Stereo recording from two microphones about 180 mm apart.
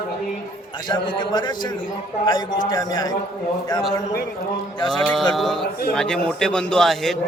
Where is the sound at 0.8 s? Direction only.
25° left (ahead or behind).